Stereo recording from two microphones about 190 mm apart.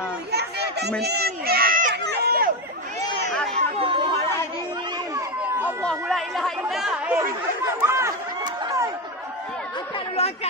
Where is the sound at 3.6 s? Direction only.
30° right (ahead or behind).